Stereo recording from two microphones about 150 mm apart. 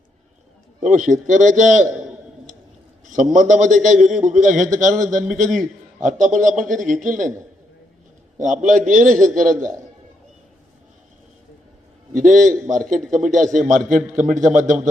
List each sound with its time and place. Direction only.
0.8 s a man's voice: 60° right (ahead or behind)
3.3 s a man's voice: 55° right (ahead or behind)
8.4 s a man's voice: 55° right (ahead or behind)
12.1 s a man's voice: 55° right (ahead or behind)